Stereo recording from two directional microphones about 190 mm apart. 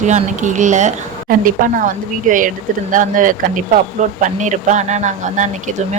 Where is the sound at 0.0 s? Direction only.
40° right (ahead or behind).